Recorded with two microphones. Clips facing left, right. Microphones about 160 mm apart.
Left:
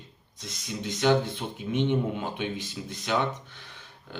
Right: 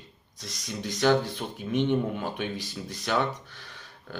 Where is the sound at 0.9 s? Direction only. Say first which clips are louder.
Even; 20° left (ahead or behind).